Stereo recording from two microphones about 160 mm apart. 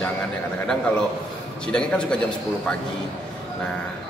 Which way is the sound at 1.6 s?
5° left (ahead or behind).